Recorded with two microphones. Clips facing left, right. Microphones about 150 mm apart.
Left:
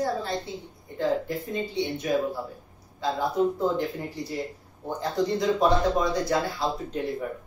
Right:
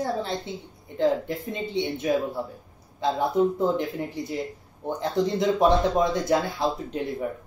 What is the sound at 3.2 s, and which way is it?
Speech, 20° right (ahead or behind).